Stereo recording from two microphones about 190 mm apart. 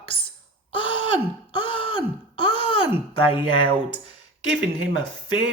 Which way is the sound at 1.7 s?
25° left (ahead or behind).